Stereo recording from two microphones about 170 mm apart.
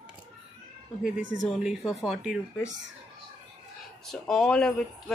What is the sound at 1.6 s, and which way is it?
Speech, centre (ahead or behind).